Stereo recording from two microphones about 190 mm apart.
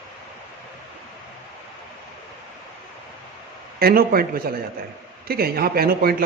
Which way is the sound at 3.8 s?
50° right (ahead or behind).